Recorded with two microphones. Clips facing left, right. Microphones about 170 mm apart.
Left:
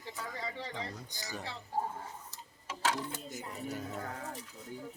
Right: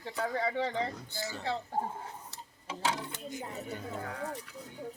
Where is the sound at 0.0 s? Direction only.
60° right (ahead or behind).